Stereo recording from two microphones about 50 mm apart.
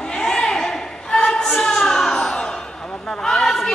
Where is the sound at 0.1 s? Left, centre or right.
Centre.